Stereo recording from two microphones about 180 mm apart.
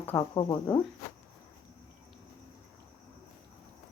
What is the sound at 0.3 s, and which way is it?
Speech, 20° left (ahead or behind).